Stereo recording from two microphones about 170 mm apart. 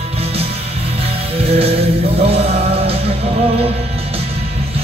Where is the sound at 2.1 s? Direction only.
35° right (ahead or behind).